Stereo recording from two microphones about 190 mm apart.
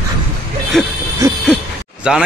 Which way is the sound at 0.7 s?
Centre (ahead or behind).